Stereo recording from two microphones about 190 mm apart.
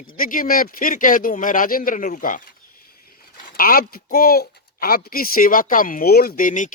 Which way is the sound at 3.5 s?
50° left (ahead or behind).